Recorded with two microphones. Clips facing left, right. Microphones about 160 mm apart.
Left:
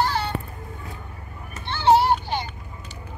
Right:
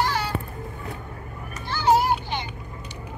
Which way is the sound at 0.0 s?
30° left (ahead or behind).